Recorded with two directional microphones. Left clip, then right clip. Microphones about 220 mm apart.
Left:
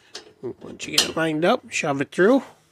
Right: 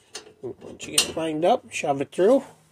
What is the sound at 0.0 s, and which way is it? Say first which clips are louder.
Speech: left 2 dB; 35° left (ahead or behind).